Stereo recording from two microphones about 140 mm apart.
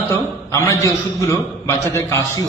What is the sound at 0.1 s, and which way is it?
A man's voice, 20° left (ahead or behind).